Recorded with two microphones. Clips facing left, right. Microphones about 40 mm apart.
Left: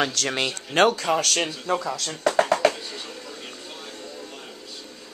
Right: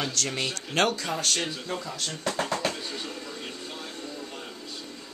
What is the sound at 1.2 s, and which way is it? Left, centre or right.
Speech, left.